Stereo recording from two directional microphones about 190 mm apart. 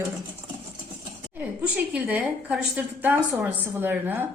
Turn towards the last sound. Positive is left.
turn(degrees=-10)  # may be behind; listen again after turning